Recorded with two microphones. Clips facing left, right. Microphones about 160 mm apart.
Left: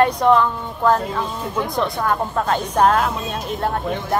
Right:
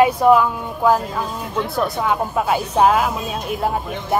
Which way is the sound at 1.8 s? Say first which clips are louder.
Right 1 dB; 10° right (ahead or behind).